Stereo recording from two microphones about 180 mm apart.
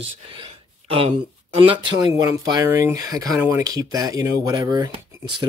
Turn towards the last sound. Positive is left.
turn(degrees=-20)  # may be behind; listen again after turning